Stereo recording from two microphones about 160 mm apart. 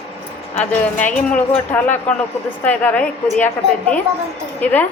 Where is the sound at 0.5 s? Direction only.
10° left (ahead or behind).